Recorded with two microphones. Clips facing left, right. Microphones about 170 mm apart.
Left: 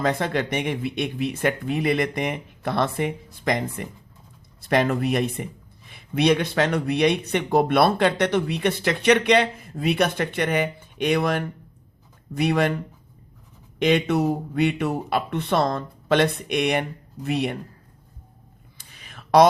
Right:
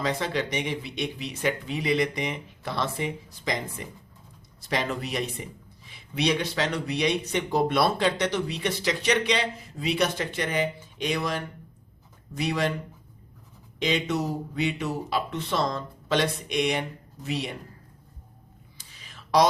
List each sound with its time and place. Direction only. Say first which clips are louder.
0.0 s speech: left 4 dB; 55° left (ahead or behind)
13.7 s speech: left 6 dB; 60° left (ahead or behind)
18.8 s a sound: left 5 dB; 55° left (ahead or behind)